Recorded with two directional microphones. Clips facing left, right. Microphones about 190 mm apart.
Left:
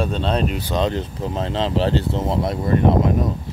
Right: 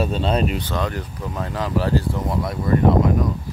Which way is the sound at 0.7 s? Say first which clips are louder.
Left 4 dB; 20° left (ahead or behind).